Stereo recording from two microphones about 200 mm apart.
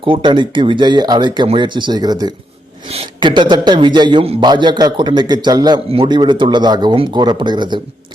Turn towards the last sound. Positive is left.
turn(degrees=-20)  # may be behind; listen again after turning